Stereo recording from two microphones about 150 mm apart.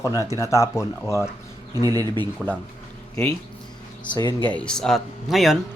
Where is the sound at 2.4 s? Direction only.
Centre (ahead or behind).